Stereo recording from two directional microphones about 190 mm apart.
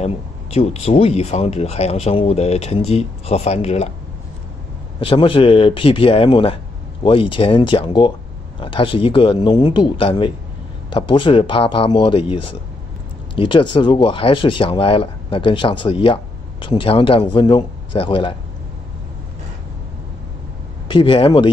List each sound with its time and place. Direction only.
0.0 s speech: 35° left (ahead or behind)
5.0 s speech: 30° left (ahead or behind)
20.9 s speech: 25° left (ahead or behind)